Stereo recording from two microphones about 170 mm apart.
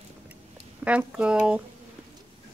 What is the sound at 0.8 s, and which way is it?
Speech, 5° right (ahead or behind).